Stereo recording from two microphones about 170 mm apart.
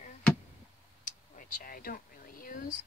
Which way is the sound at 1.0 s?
50° left (ahead or behind).